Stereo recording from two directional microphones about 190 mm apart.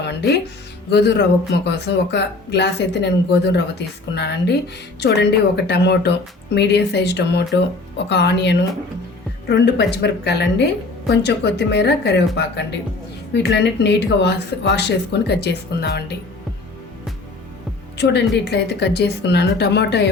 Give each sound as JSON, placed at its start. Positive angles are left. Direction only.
{"t": 0.1, "sound": "music", "side_deg": 60}
{"t": 0.9, "sound": "speech", "side_deg": 60}
{"t": 17.9, "sound": "speech", "side_deg": 60}